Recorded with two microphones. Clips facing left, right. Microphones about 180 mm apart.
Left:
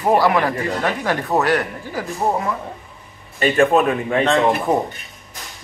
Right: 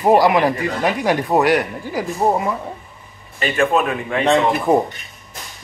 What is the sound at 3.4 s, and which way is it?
Speech, 40° left (ahead or behind).